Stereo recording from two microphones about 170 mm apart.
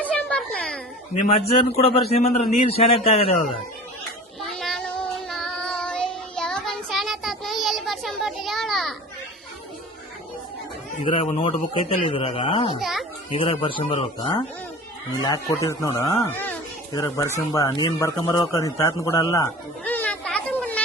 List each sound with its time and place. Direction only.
0.1 s music: 5° left (ahead or behind)
1.1 s a man's voice: 40° left (ahead or behind)
4.4 s child singing: centre (ahead or behind)
11.0 s a man's voice: 30° left (ahead or behind)
12.8 s a sound: centre (ahead or behind)
13.3 s a man's voice: 30° left (ahead or behind)
15.1 s speech: 20° left (ahead or behind)
16.3 s a sound: 10° left (ahead or behind)
16.9 s speech: 20° left (ahead or behind)
19.8 s a sound: 10° left (ahead or behind)